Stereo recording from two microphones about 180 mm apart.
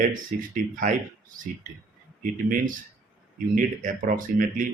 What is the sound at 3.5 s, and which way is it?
Speech, 45° right (ahead or behind).